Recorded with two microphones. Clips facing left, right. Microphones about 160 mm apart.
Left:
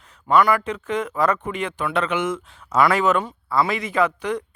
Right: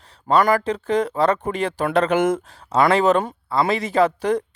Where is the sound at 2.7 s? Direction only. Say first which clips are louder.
Right 2 dB; 25° right (ahead or behind).